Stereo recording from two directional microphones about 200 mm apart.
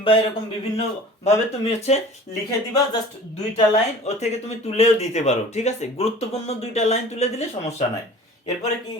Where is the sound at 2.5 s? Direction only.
20° left (ahead or behind).